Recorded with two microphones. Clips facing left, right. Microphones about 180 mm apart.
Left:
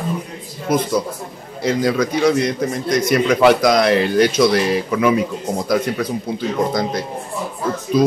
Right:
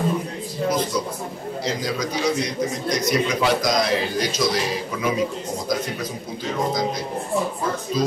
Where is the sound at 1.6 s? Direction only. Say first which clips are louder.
Left 9 dB; 55° left (ahead or behind).